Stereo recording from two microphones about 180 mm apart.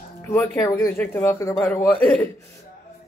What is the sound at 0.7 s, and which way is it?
A man's voice, 10° left (ahead or behind).